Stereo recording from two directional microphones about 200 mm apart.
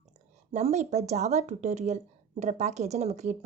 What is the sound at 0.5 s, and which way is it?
Speech, 35° right (ahead or behind).